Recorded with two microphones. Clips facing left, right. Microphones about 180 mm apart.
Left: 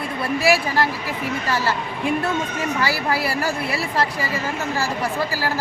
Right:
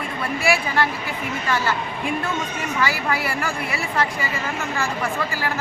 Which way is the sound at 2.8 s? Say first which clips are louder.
Even; 35° left (ahead or behind).